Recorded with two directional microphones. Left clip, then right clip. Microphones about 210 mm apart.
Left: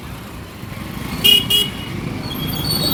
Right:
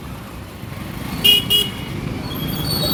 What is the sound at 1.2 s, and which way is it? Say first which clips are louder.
Vehicle: left 1 dB; 45° left (ahead or behind).